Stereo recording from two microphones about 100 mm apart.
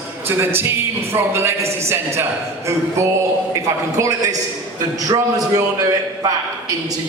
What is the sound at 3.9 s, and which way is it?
A man's voice, 35° right (ahead or behind).